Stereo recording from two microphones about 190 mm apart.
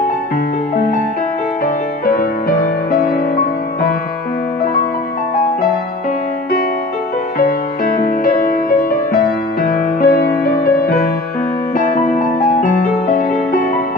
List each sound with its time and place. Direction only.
2.9 s music: 50° left (ahead or behind)
7.3 s music: 50° left (ahead or behind)
11.8 s music: 45° left (ahead or behind)